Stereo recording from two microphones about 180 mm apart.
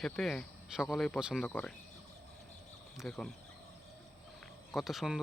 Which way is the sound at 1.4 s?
10° left (ahead or behind).